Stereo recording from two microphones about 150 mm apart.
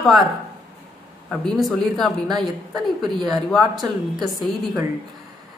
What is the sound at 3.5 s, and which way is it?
Speech, centre (ahead or behind).